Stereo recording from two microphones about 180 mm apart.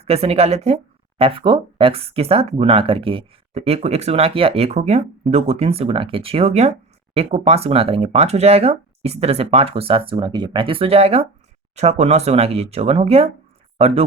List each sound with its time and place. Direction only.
0.0 s speech: 35° right (ahead or behind)